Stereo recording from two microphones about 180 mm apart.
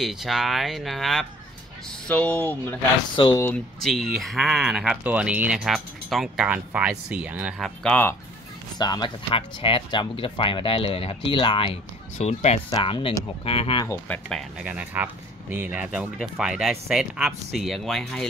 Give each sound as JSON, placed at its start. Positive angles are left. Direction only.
{"t": 0.0, "sound": "speech", "side_deg": 0}
{"t": 3.2, "sound": "speech", "side_deg": 25}
{"t": 3.4, "sound": "speech", "side_deg": 0}
{"t": 8.7, "sound": "speech", "side_deg": 25}
{"t": 13.8, "sound": "speech", "side_deg": 10}
{"t": 14.6, "sound": "speech", "side_deg": -5}